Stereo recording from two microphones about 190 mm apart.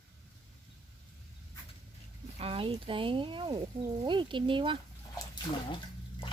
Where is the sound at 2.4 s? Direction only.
30° right (ahead or behind).